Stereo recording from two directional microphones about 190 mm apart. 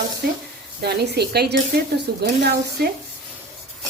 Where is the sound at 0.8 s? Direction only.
60° right (ahead or behind).